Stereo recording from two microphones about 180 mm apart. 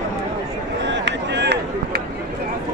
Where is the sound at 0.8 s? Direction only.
75° right (ahead or behind).